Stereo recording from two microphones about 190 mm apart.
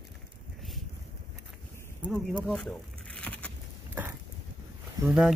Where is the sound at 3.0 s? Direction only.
5° left (ahead or behind).